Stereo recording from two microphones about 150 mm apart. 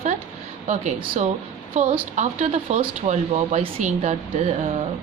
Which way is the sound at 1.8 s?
50° right (ahead or behind).